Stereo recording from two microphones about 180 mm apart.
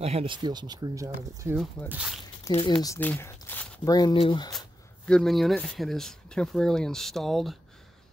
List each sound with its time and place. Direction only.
0.0 s speech: 35° right (ahead or behind); by 1.6 s 15° right (ahead or behind)
1.9 s speech: 5° right (ahead or behind)
2.5 s speech: 15° left (ahead or behind)
4.5 s speech: 5° left (ahead or behind)